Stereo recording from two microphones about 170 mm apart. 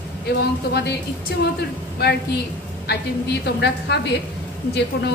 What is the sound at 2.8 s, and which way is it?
A woman's voice, 75° left (ahead or behind).